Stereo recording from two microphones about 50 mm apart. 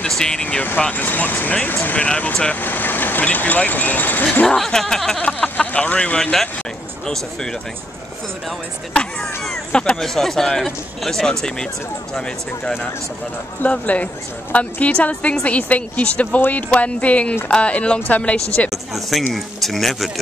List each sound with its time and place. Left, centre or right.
0.1 s speech: centre
0.9 s speech: left
1.7 s speech: left
2.0 s speech: left
2.5 s speech: left
4.6 s speech: centre
5.2 s speech: left
9.2 s speech: centre
9.7 s speech: centre
10.0 s speech: centre
13.7 s speech: left
18.7 s speech: centre